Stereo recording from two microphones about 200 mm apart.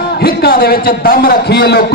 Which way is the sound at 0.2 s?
50° left (ahead or behind).